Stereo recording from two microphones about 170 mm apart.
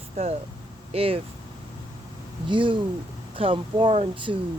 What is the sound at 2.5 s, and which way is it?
Speech, 30° right (ahead or behind).